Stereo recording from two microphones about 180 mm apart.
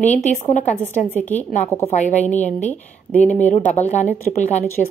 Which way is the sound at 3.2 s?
40° left (ahead or behind).